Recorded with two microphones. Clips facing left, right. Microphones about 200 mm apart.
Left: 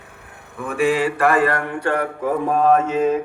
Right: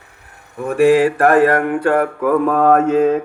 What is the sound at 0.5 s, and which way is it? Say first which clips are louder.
Speech: right 7 dB; 40° right (ahead or behind).